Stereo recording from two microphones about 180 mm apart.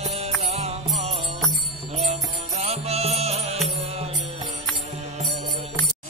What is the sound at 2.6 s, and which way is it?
Music, 35° right (ahead or behind).